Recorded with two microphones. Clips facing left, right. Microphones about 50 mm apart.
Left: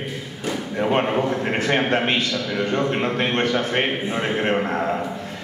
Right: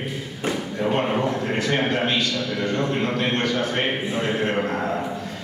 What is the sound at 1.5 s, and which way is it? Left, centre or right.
A man's voice, left.